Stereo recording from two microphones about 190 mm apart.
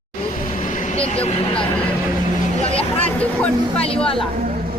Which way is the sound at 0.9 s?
30° left (ahead or behind).